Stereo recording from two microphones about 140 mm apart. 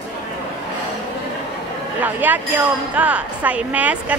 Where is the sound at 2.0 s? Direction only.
10° right (ahead or behind).